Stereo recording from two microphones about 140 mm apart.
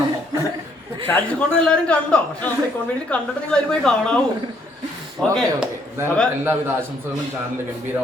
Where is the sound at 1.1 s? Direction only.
10° left (ahead or behind).